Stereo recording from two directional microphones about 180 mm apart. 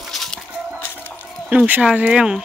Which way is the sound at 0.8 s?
10° left (ahead or behind).